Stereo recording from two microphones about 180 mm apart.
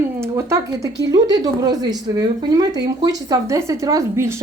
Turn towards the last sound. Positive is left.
turn(degrees=-15)  # may be behind; listen again after turning